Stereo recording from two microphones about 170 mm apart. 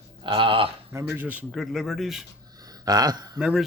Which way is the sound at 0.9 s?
10° right (ahead or behind).